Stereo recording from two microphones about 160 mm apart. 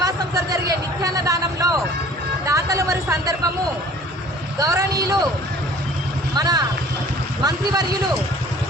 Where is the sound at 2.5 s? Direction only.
20° right (ahead or behind).